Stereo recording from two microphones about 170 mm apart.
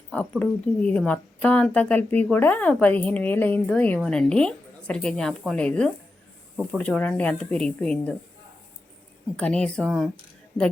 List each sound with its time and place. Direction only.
0.1 s a woman's voice: 10° left (ahead or behind)
9.3 s speech: 5° left (ahead or behind)